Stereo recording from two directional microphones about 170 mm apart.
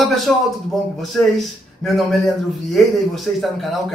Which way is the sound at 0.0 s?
Centre (ahead or behind).